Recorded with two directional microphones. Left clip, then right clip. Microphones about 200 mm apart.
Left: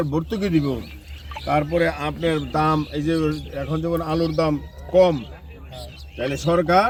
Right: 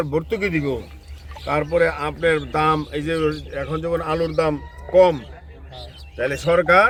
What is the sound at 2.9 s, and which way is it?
Speech, 25° right (ahead or behind).